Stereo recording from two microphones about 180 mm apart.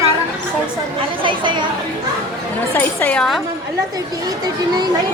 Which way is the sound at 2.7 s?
10° left (ahead or behind).